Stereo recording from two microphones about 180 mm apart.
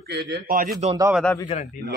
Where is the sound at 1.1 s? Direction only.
5° left (ahead or behind).